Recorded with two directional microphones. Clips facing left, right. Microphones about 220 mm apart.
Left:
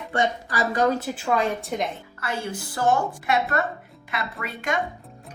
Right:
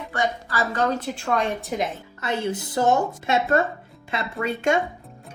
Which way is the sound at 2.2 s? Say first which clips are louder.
Right 4 dB; 20° right (ahead or behind).